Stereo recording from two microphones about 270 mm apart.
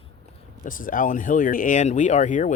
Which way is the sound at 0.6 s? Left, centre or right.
Left.